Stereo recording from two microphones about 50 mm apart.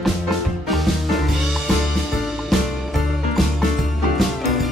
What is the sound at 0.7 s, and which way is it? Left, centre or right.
Music, centre.